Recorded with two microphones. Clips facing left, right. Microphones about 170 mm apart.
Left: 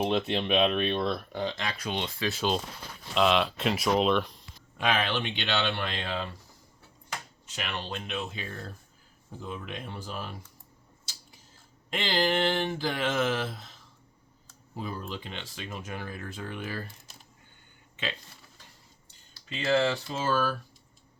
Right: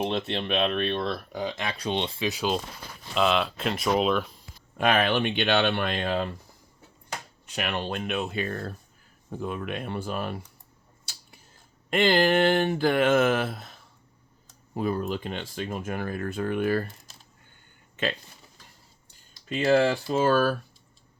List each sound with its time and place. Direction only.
0.0 s speech: 5° left (ahead or behind)
1.7 s speech: 30° right (ahead or behind)
2.3 s speech: 5° right (ahead or behind)
4.8 s speech: 55° right (ahead or behind)
7.4 s a sound: 55° right (ahead or behind)
14.8 s speech: 55° right (ahead or behind)
17.9 s a sound: 50° right (ahead or behind)
19.5 s speech: 50° right (ahead or behind)